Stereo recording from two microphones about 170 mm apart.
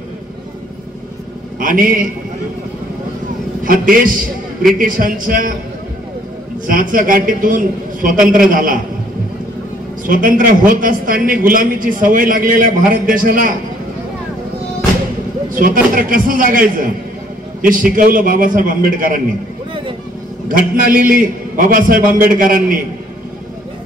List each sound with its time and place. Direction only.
1.6 s a man's voice: 55° right (ahead or behind)
3.6 s a man's voice: 55° right (ahead or behind)
6.7 s a man's voice: 55° right (ahead or behind)
10.0 s a man's voice: 55° right (ahead or behind)
15.5 s a man's voice: 55° right (ahead or behind)
20.4 s a man's voice: 55° right (ahead or behind)